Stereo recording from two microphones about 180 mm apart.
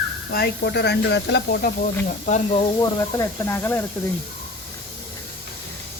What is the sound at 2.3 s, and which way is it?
Speech, 35° left (ahead or behind).